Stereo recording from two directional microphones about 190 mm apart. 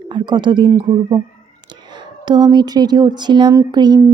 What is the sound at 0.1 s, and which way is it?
A woman's voice, 25° right (ahead or behind).